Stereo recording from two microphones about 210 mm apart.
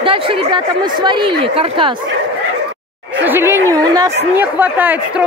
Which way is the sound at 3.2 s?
10° right (ahead or behind).